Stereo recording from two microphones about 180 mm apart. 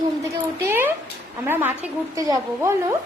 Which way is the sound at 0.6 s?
15° right (ahead or behind).